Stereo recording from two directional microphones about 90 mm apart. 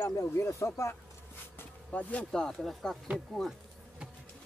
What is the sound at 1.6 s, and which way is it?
Speech, 15° left (ahead or behind).